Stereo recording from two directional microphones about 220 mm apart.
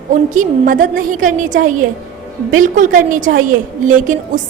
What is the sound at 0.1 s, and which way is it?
A woman's voice, 35° right (ahead or behind).